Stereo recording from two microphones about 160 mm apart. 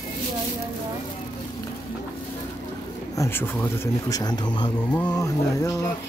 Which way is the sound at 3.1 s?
15° left (ahead or behind).